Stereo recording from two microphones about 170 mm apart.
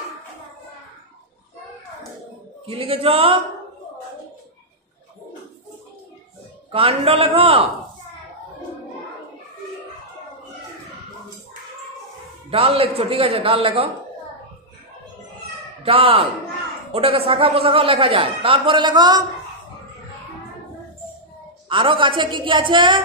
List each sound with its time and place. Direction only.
2.6 s a man's voice: 35° right (ahead or behind)
6.7 s a man's voice: 35° right (ahead or behind)
12.4 s a man's voice: 35° right (ahead or behind)
15.8 s a man's voice: 35° right (ahead or behind)
21.6 s a woman's voice: 30° right (ahead or behind)